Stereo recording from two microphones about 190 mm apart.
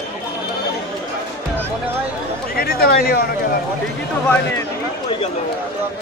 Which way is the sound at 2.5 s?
50° left (ahead or behind).